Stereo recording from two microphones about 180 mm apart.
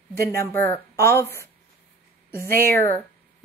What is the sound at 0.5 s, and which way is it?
Speech, 15° left (ahead or behind).